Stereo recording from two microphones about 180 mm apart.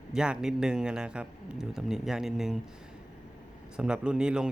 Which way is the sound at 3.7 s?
5° right (ahead or behind).